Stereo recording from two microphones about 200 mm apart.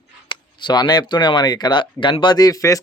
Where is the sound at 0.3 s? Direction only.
20° left (ahead or behind).